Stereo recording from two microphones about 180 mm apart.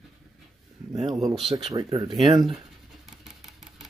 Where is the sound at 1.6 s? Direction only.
30° right (ahead or behind).